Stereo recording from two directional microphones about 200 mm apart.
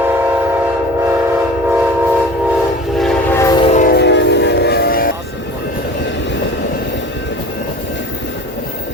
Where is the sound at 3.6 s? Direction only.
35° left (ahead or behind).